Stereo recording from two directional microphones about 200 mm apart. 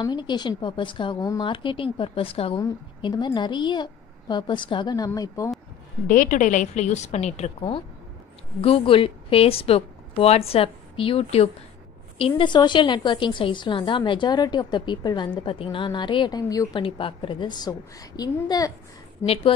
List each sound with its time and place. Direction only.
0.0 s a woman's voice: 20° left (ahead or behind)
6.0 s a woman's voice: 40° left (ahead or behind); by 18.7 s 20° left (ahead or behind)
19.2 s a woman's voice: 30° left (ahead or behind)